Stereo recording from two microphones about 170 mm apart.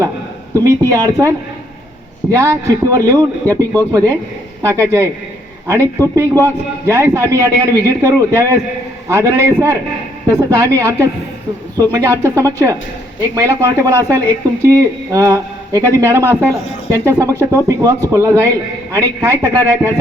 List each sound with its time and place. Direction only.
0.5 s a man's voice: 15° right (ahead or behind)
2.3 s a man's voice: 20° right (ahead or behind)